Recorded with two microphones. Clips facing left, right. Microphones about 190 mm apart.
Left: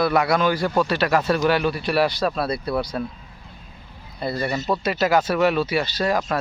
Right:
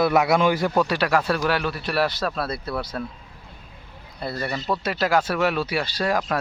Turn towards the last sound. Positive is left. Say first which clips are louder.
# left 2 dB
turn(degrees=-5)  # may be behind; listen again after turning